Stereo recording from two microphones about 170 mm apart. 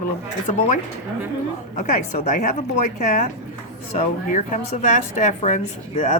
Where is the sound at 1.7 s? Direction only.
45° left (ahead or behind).